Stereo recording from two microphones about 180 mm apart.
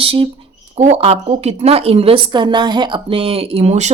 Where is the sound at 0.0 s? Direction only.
30° right (ahead or behind).